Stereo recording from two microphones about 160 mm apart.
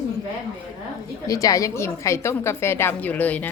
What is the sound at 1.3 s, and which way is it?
A woman's voice, 20° left (ahead or behind).